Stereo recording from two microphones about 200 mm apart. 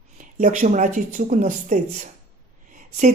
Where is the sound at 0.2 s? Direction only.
40° right (ahead or behind).